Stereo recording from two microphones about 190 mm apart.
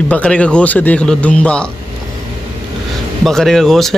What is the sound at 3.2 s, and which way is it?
Speech, centre (ahead or behind).